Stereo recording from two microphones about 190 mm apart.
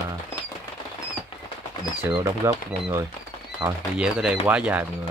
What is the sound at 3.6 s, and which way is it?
Speech, 5° right (ahead or behind).